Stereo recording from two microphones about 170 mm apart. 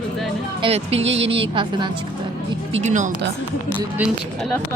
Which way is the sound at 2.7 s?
45° right (ahead or behind).